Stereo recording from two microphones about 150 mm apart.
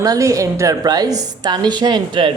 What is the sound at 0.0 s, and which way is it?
Speech, 20° right (ahead or behind).